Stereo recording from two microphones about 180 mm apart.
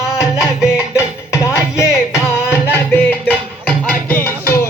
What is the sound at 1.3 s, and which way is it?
Music, 15° left (ahead or behind).